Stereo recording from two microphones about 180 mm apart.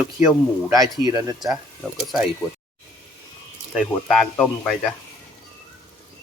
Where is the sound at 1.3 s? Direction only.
Centre (ahead or behind).